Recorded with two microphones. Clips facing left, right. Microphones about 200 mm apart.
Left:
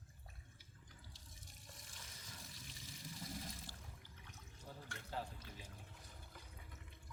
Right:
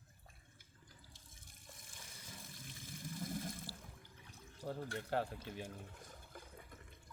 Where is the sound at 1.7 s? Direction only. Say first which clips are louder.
Right 2 dB; 50° right (ahead or behind).